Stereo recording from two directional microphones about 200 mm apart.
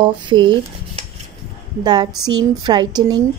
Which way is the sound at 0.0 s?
25° right (ahead or behind).